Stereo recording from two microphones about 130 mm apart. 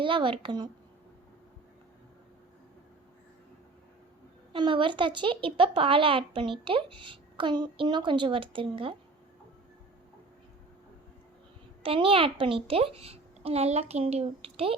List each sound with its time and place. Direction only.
0.0 s speech: 40° right (ahead or behind)
4.5 s speech: 40° right (ahead or behind)
11.8 s a child's voice: 45° right (ahead or behind)